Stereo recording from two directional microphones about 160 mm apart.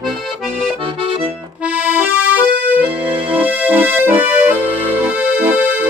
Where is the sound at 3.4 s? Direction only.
10° right (ahead or behind).